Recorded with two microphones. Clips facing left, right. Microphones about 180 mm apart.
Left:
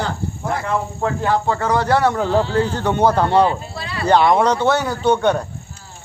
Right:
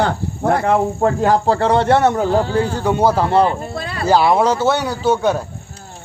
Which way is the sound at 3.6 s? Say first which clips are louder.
Right 4 dB; 50° right (ahead or behind).